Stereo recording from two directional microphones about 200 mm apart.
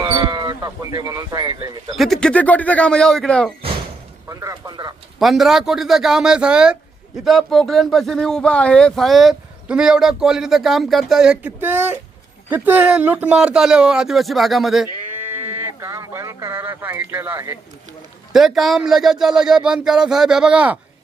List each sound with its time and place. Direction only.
0.0 s speech: 20° right (ahead or behind)
2.0 s speech: 5° left (ahead or behind)
4.3 s speech: 15° right (ahead or behind)
5.2 s speech: centre (ahead or behind)
18.3 s speech: centre (ahead or behind)